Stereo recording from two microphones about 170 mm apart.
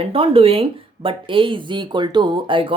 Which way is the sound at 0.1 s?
30° right (ahead or behind).